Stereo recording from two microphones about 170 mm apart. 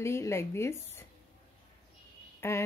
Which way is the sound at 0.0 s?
15° left (ahead or behind).